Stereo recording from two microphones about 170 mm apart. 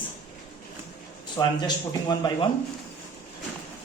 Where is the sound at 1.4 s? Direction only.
25° left (ahead or behind).